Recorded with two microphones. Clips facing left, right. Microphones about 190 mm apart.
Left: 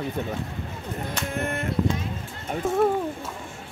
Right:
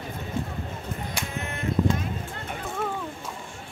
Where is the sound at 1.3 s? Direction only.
55° left (ahead or behind).